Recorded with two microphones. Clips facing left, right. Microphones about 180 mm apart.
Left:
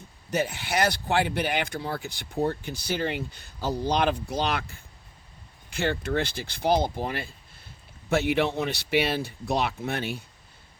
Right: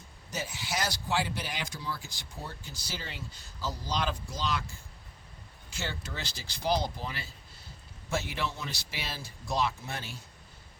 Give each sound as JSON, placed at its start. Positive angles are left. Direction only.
{"t": 0.3, "sound": "speech", "side_deg": 60}